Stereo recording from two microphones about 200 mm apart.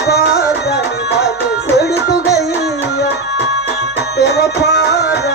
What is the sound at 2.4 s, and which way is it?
Music, 55° left (ahead or behind).